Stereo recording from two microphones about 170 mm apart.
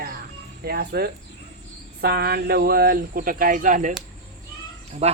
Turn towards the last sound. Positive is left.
turn(degrees=-35)  # may be behind; listen again after turning